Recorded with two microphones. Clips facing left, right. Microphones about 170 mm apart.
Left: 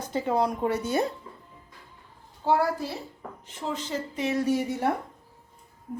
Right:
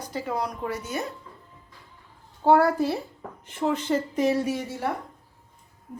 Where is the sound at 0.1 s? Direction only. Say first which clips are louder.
Left 5 dB; 25° left (ahead or behind).